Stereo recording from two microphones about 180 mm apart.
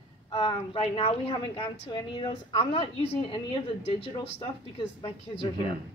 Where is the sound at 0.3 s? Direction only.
30° left (ahead or behind).